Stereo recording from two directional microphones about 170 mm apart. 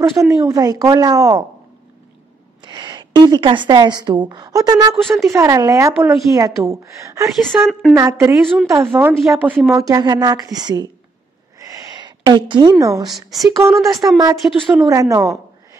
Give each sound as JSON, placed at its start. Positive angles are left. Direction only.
{"t": 0.5, "sound": "a woman's voice", "side_deg": -20}
{"t": 2.6, "sound": "a woman's voice", "side_deg": -25}
{"t": 7.2, "sound": "a woman's voice", "side_deg": 0}
{"t": 7.9, "sound": "speech", "side_deg": -15}
{"t": 9.1, "sound": "a woman's voice", "side_deg": 0}
{"t": 11.7, "sound": "a sound", "side_deg": -25}
{"t": 13.1, "sound": "a woman's voice", "side_deg": 0}
{"t": 14.0, "sound": "a woman's voice", "side_deg": -20}
{"t": 14.3, "sound": "a woman's voice", "side_deg": 0}
{"t": 14.9, "sound": "a woman's voice", "side_deg": -20}